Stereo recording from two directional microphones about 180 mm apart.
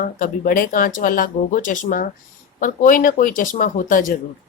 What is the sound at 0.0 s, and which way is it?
A woman's voice, 50° left (ahead or behind).